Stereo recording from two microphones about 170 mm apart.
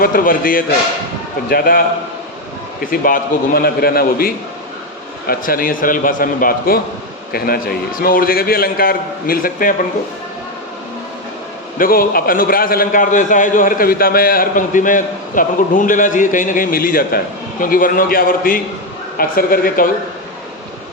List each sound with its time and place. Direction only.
0.0 s a man's voice: 55° left (ahead or behind)
2.8 s a man's voice: 55° left (ahead or behind)
11.8 s a man's voice: 60° left (ahead or behind)